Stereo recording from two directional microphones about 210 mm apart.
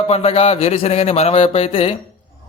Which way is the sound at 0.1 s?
30° left (ahead or behind).